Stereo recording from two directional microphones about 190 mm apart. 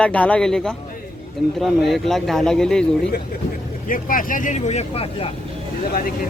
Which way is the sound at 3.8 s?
45° left (ahead or behind).